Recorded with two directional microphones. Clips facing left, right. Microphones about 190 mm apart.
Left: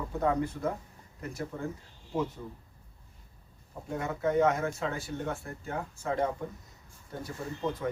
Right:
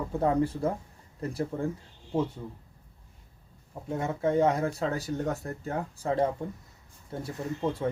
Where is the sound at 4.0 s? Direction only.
30° right (ahead or behind).